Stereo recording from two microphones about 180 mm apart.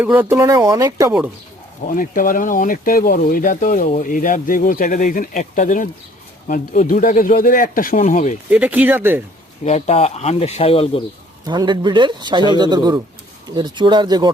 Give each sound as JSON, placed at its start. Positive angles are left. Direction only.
{"t": 0.0, "sound": "speech", "side_deg": -10}
{"t": 1.9, "sound": "speech", "side_deg": 50}
{"t": 8.4, "sound": "speech", "side_deg": -10}
{"t": 9.6, "sound": "speech", "side_deg": 35}
{"t": 11.4, "sound": "a man's voice", "side_deg": -25}